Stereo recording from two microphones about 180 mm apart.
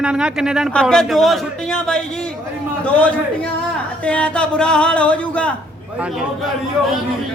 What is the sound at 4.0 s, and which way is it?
Speech, 5° left (ahead or behind).